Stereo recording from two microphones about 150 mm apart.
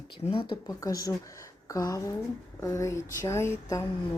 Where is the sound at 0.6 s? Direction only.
25° left (ahead or behind).